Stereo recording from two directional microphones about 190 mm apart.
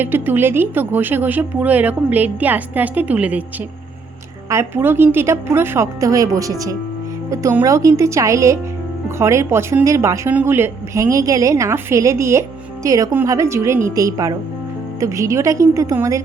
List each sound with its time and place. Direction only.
0.0 s speech: 10° right (ahead or behind)
4.4 s speech: 15° right (ahead or behind)